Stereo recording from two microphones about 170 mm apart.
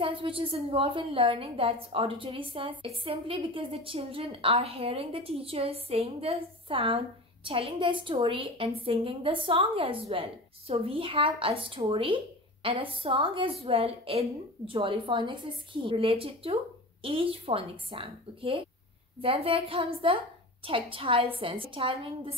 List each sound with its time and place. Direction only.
0.0 s a woman's voice: 30° right (ahead or behind)